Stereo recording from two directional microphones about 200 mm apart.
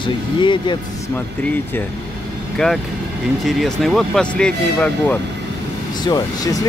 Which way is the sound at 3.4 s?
Centre (ahead or behind).